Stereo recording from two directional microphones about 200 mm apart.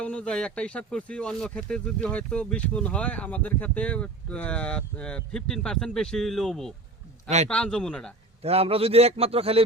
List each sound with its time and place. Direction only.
0.0 s speech: 5° left (ahead or behind)
8.4 s a man's voice: 30° right (ahead or behind)